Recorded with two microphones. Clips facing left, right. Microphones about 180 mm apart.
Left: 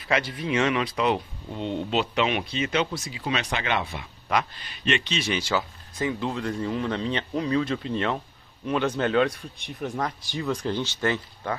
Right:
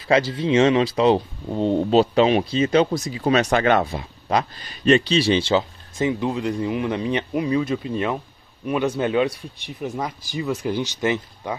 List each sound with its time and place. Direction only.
0.3 s speech: 25° right (ahead or behind)